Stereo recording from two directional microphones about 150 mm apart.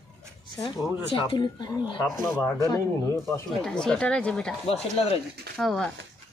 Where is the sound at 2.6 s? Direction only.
20° left (ahead or behind).